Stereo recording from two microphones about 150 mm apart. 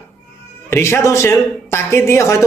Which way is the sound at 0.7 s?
15° left (ahead or behind).